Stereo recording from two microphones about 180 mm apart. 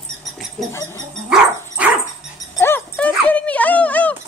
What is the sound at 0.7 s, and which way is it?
Goat, 15° left (ahead or behind).